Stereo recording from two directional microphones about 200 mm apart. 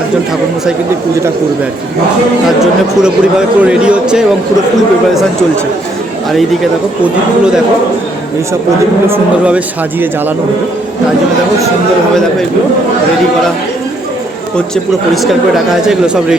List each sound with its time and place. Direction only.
3.6 s speech: 5° right (ahead or behind)
9.0 s speech: 10° right (ahead or behind)
15.1 s speech: centre (ahead or behind)